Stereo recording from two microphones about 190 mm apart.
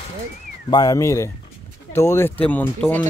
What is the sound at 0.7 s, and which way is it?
A man's voice, 20° left (ahead or behind).